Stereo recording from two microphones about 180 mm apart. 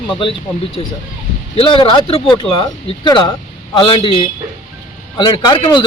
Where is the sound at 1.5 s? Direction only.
30° left (ahead or behind).